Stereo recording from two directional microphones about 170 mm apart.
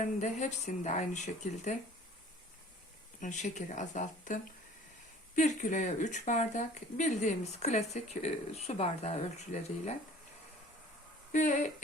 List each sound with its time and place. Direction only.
0.0 s speech: 45° left (ahead or behind)
3.2 s speech: 45° left (ahead or behind)
11.3 s speech: 45° left (ahead or behind)